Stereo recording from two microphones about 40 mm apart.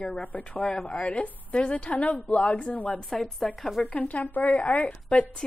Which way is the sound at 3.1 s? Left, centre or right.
Centre.